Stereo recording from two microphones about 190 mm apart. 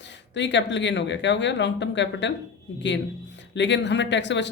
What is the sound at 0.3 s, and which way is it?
A man's voice, 70° left (ahead or behind).